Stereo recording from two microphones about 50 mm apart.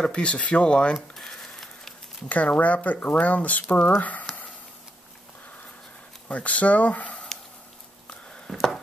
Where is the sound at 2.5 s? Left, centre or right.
Left.